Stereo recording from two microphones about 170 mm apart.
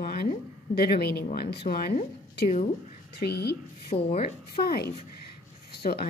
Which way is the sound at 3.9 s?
35° left (ahead or behind).